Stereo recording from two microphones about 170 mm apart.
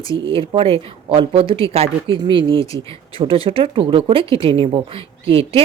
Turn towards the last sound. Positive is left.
turn(degrees=-35)  # may be behind; listen again after turning